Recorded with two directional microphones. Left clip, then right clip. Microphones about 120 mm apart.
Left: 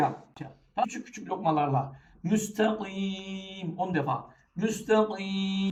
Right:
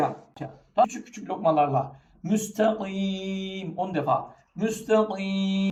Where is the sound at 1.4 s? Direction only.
40° right (ahead or behind).